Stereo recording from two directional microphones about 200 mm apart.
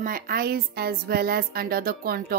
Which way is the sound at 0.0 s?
45° right (ahead or behind).